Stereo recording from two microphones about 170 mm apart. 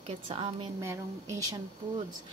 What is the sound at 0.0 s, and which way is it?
Speech, 40° right (ahead or behind).